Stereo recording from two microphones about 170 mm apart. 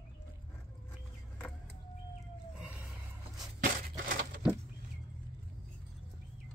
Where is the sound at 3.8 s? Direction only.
55° right (ahead or behind).